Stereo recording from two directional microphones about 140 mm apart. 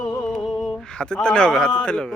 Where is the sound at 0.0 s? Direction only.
25° left (ahead or behind).